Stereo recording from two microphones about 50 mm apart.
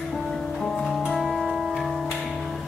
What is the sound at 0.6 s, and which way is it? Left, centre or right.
Music, centre.